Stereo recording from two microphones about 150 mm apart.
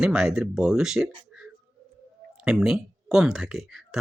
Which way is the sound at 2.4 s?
5° right (ahead or behind).